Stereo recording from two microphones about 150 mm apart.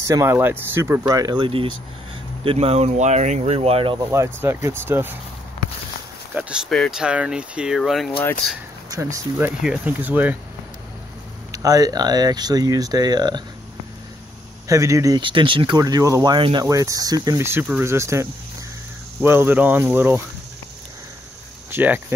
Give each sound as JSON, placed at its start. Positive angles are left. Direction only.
{"t": 0.0, "sound": "speech", "side_deg": -20}
{"t": 1.0, "sound": "speech", "side_deg": -25}
{"t": 4.1, "sound": "speech", "side_deg": -15}
{"t": 6.3, "sound": "speech", "side_deg": -10}
{"t": 6.7, "sound": "speech", "side_deg": 0}
{"t": 8.9, "sound": "speech", "side_deg": -20}
{"t": 9.6, "sound": "speech", "side_deg": -5}
{"t": 11.5, "sound": "speech", "side_deg": -25}
{"t": 14.7, "sound": "speech", "side_deg": -20}
{"t": 16.6, "sound": "speech", "side_deg": -20}
{"t": 21.6, "sound": "speech", "side_deg": -15}